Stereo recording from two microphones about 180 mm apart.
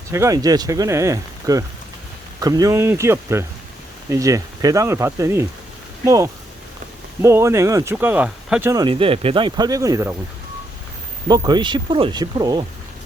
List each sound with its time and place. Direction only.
0.1 s speech: 15° right (ahead or behind)
8.7 s speech: 25° right (ahead or behind)
11.3 s speech: 25° right (ahead or behind)